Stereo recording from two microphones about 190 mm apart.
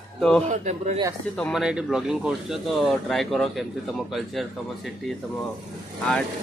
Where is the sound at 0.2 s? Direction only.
5° left (ahead or behind).